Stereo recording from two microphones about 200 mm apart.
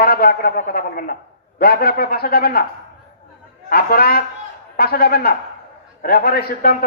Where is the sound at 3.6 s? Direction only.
50° left (ahead or behind).